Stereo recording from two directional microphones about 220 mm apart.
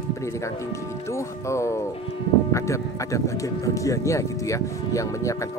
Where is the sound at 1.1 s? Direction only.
15° left (ahead or behind).